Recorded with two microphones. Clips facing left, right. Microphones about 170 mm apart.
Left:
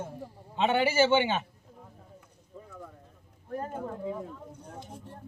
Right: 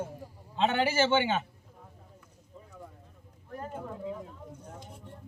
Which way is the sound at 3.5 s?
40° left (ahead or behind).